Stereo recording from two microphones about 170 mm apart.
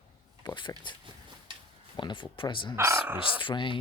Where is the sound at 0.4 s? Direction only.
25° left (ahead or behind).